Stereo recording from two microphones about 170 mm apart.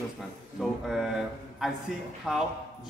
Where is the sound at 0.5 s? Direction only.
Centre (ahead or behind).